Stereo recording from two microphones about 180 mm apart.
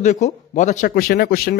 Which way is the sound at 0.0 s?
40° left (ahead or behind).